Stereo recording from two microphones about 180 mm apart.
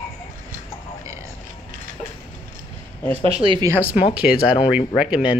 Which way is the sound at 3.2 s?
30° right (ahead or behind).